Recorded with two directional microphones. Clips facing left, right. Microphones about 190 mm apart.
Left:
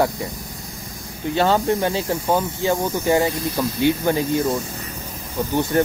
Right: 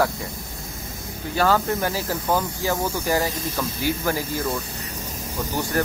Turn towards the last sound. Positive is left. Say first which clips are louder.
# left 5 dB
turn(degrees=25)  # may be behind; listen again after turning